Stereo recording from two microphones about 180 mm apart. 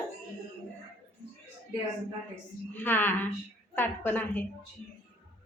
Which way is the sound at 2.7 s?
10° left (ahead or behind).